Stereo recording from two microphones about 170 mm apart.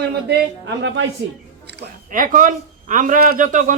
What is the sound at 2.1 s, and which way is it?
A man's voice, 50° right (ahead or behind).